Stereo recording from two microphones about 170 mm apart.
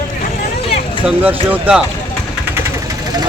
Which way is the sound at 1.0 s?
10° right (ahead or behind).